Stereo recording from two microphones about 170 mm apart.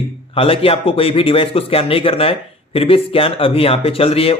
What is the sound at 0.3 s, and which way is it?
A man's voice, 35° left (ahead or behind).